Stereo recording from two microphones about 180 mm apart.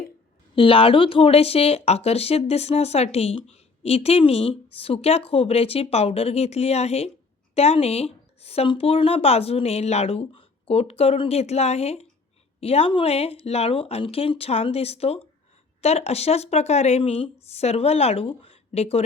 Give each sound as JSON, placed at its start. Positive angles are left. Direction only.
{"t": 0.5, "sound": "speech", "side_deg": 30}